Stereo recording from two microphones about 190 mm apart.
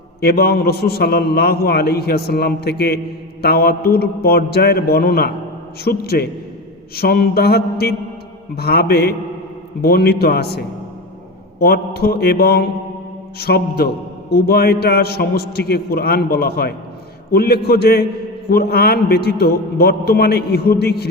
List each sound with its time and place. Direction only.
0.2 s a man's voice: 55° left (ahead or behind)
11.6 s a man's voice: 55° left (ahead or behind)